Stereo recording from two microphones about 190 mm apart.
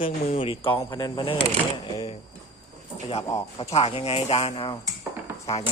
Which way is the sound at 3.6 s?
35° left (ahead or behind).